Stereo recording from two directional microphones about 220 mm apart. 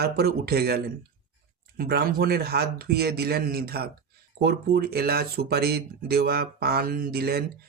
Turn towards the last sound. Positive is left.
turn(degrees=-45)  # may be behind; listen again after turning